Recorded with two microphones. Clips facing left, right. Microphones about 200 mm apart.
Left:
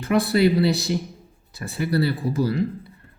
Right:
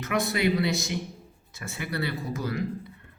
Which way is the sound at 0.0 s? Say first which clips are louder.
Left 7 dB; 35° left (ahead or behind).